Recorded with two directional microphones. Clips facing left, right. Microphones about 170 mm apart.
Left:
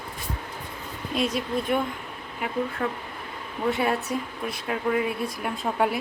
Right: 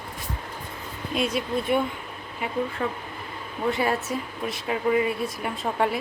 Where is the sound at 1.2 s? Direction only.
Centre (ahead or behind).